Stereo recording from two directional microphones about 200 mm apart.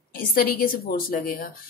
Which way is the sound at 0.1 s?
45° left (ahead or behind).